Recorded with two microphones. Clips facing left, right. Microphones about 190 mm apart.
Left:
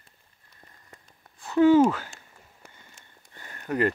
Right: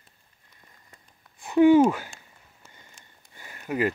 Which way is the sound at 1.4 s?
15° right (ahead or behind).